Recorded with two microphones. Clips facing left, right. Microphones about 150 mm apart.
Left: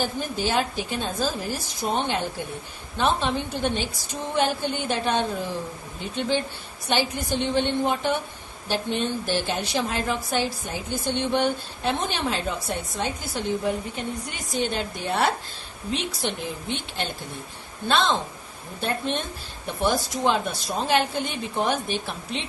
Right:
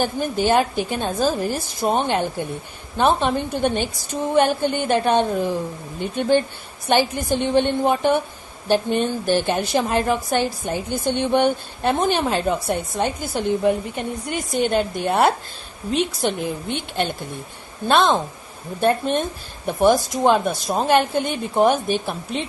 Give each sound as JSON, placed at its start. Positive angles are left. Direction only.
{"t": 0.0, "sound": "a woman's voice", "side_deg": -55}